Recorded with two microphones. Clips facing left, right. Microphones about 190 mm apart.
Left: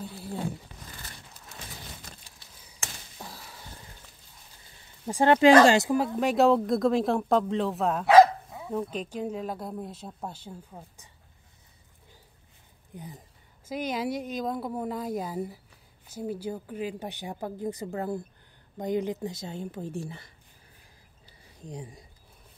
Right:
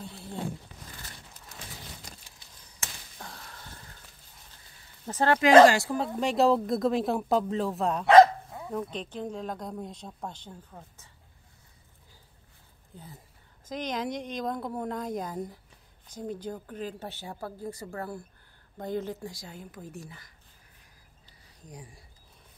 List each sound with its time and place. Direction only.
0.0 s wild animals: 5° left (ahead or behind)
3.2 s a sound: 5° left (ahead or behind)
5.0 s a woman's voice: 15° left (ahead or behind)
5.9 s speech: centre (ahead or behind)
12.9 s a woman's voice: 15° left (ahead or behind)
21.6 s a woman's voice: 25° left (ahead or behind)